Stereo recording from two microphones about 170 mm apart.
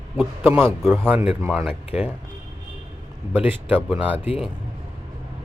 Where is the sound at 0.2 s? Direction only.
10° right (ahead or behind).